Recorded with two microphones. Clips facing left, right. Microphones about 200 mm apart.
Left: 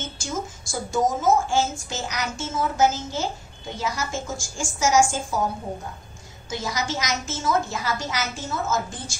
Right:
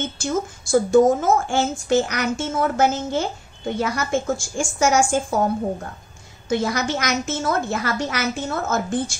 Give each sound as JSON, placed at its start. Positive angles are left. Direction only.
{"t": 0.2, "sound": "a woman's voice", "side_deg": -60}
{"t": 6.5, "sound": "a woman's voice", "side_deg": -60}